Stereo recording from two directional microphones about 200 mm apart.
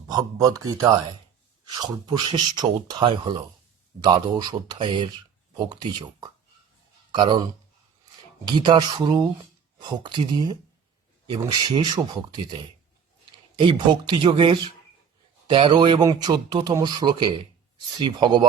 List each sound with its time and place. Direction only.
0.1 s speech: 15° right (ahead or behind)
8.4 s speech: 20° right (ahead or behind)
13.6 s speech: 20° right (ahead or behind)